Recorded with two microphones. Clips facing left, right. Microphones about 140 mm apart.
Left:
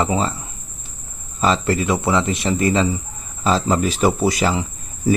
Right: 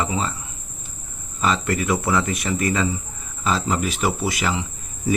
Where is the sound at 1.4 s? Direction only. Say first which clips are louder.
Left 3 dB; 30° left (ahead or behind).